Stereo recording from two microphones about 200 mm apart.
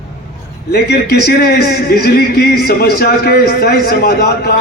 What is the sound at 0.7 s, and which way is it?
A man's voice, 55° left (ahead or behind).